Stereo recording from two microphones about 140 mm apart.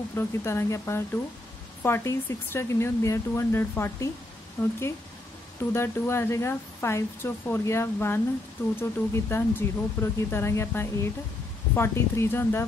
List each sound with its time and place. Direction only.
0.1 s speech: 15° left (ahead or behind)